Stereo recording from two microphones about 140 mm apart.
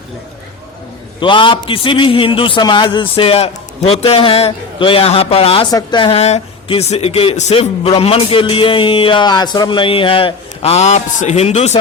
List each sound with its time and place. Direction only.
1.2 s speech: 35° left (ahead or behind); by 11.8 s 50° left (ahead or behind)